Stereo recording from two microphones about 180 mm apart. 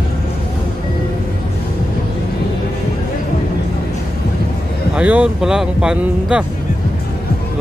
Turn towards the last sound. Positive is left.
turn(degrees=-5)  # may be behind; listen again after turning